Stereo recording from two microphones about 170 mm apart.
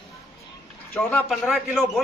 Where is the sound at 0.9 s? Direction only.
10° left (ahead or behind).